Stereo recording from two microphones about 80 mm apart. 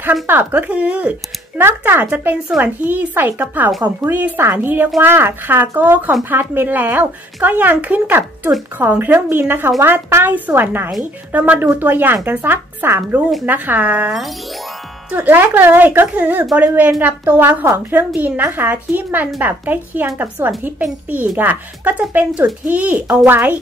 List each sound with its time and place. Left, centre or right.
0.0 s speech: right